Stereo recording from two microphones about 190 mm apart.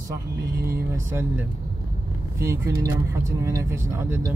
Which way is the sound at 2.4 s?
15° right (ahead or behind).